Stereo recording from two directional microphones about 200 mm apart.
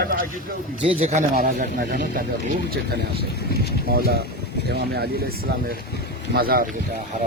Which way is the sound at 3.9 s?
50° right (ahead or behind).